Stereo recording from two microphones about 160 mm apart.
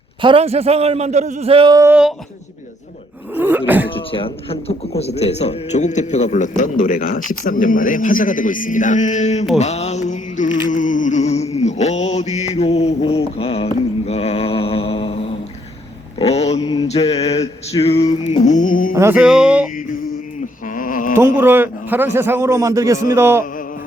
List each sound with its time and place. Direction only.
0.2 s a man's voice: 35° right (ahead or behind)
1.7 s a man's voice: 20° right (ahead or behind)
3.3 s a man's voice: 10° right (ahead or behind)
3.9 s a man's voice: 35° left (ahead or behind)
9.6 s a sound: 45° left (ahead or behind)
16.1 s mantra: 40° left (ahead or behind)
17.7 s a sound: 40° left (ahead or behind)
18.3 s music: 50° left (ahead or behind)
18.9 s speech: 10° right (ahead or behind)
20.7 s a sound: 60° left (ahead or behind)
21.2 s a man's voice: 15° right (ahead or behind)